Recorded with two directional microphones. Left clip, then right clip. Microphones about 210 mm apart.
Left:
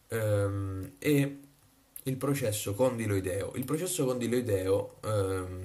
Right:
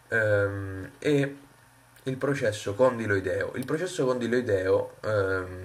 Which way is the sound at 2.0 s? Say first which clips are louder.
Right 5 dB; 30° left (ahead or behind).